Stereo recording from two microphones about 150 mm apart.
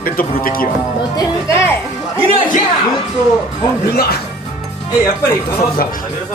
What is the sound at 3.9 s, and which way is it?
Speech, 90° left.